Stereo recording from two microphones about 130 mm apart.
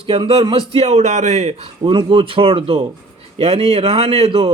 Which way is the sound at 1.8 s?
40° right (ahead or behind).